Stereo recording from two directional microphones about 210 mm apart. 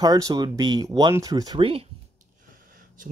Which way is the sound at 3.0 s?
40° right (ahead or behind).